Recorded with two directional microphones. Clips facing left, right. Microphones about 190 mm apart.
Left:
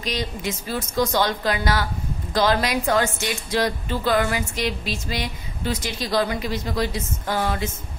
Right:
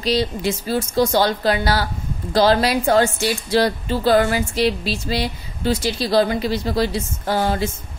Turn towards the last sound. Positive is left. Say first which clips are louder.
# right 4 dB
turn(degrees=-30)  # may be behind; listen again after turning